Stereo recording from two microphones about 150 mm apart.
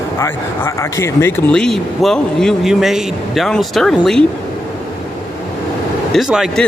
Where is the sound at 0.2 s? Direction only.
20° left (ahead or behind).